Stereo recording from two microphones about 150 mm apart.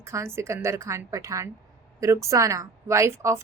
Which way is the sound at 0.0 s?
20° right (ahead or behind).